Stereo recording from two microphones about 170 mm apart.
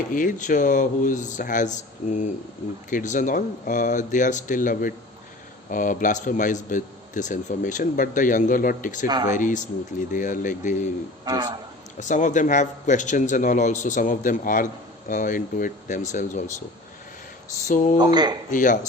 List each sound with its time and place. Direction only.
0.1 s a man's voice: 50° left (ahead or behind)
9.0 s speech: 25° right (ahead or behind)
9.3 s a man's voice: 50° left (ahead or behind)
11.3 s speech: 25° right (ahead or behind)
11.9 s a man's voice: 45° left (ahead or behind)
17.7 s a man's voice: 50° left (ahead or behind)
17.9 s speech: 25° right (ahead or behind)
18.5 s a man's voice: 50° left (ahead or behind)